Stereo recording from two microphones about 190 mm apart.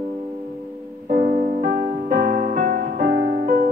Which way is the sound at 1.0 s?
45° right (ahead or behind).